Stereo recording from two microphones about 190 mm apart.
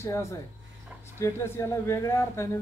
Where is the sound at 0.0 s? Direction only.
15° left (ahead or behind).